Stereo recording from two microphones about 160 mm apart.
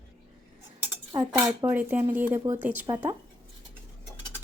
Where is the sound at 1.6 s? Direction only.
10° right (ahead or behind).